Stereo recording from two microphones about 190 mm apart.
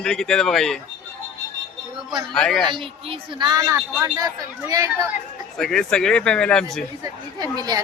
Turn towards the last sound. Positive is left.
turn(degrees=-20)  # may be behind; listen again after turning